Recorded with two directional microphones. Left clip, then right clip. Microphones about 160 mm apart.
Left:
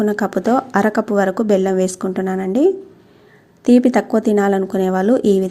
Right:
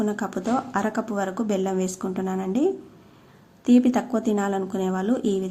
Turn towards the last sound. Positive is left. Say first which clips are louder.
# left 10 dB
turn(degrees=40)  # may be behind; listen again after turning